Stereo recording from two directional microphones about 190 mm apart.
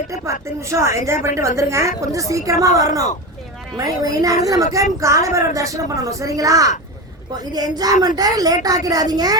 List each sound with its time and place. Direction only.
0.1 s speech: 15° right (ahead or behind)